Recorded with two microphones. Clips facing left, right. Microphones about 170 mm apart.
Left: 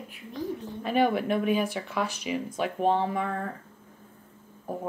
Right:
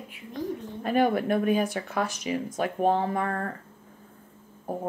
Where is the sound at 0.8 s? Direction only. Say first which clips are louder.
Right 1 dB; 45° right (ahead or behind).